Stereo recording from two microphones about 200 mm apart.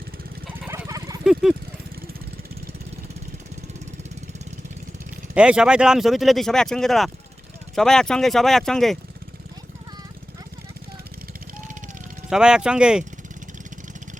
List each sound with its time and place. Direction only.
0.7 s jackhammer: 15° right (ahead or behind)
1.2 s a sound: 5° right (ahead or behind)
5.3 s speech: 5° right (ahead or behind)
12.3 s speech: 5° right (ahead or behind)